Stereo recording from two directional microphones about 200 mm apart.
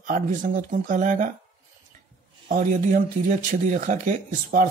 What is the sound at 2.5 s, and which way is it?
Speech, 40° right (ahead or behind).